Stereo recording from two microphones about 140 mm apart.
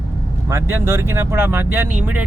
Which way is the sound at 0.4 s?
20° right (ahead or behind).